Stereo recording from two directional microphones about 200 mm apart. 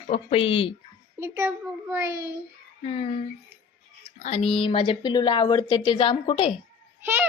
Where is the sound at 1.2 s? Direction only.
15° right (ahead or behind).